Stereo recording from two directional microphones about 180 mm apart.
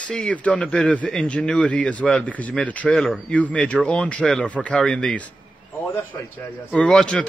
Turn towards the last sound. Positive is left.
turn(degrees=5)  # may be behind; listen again after turning